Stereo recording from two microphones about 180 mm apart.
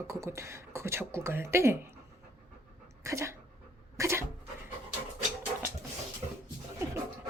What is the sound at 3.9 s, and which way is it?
Cat, 15° right (ahead or behind).